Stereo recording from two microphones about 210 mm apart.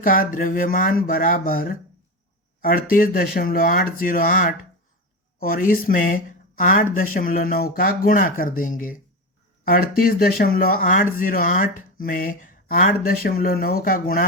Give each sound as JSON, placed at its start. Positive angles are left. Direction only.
{"t": 0.0, "sound": "speech", "side_deg": 40}